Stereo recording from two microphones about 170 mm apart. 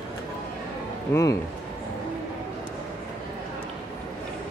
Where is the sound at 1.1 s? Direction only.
15° left (ahead or behind).